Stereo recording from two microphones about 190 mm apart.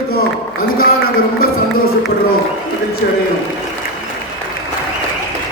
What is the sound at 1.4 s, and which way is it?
Speech, 50° left (ahead or behind).